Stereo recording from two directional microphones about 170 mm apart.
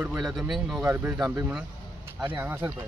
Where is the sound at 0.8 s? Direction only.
15° right (ahead or behind).